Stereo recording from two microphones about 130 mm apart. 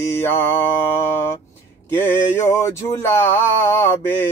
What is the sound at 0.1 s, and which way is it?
Mantra, 15° left (ahead or behind).